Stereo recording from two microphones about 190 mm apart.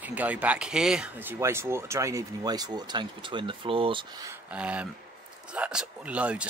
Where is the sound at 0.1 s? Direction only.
10° right (ahead or behind); by 4.0 s 30° right (ahead or behind).